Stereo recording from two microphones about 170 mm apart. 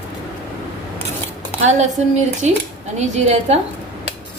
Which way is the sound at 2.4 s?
40° right (ahead or behind).